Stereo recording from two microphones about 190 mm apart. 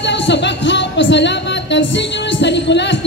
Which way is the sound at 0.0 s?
70° left (ahead or behind).